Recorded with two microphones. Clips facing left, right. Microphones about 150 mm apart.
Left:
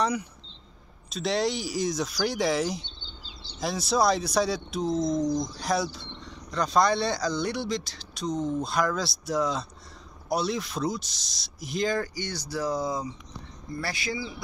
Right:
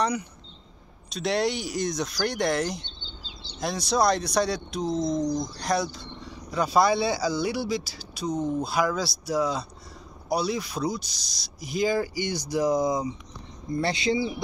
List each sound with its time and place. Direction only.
0.0 s speech: centre (ahead or behind); by 14.4 s 25° right (ahead or behind)